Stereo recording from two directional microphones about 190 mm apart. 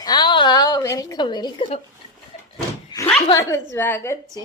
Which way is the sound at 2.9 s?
25° left (ahead or behind).